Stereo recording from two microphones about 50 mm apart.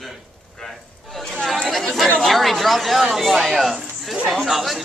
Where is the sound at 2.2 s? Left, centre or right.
Centre.